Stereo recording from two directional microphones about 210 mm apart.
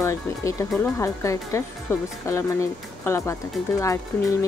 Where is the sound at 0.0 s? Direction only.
15° left (ahead or behind).